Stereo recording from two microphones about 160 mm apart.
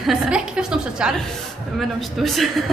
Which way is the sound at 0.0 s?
5° right (ahead or behind).